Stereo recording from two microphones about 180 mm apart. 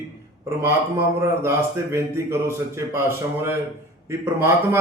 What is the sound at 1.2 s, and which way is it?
A man's voice, 15° right (ahead or behind).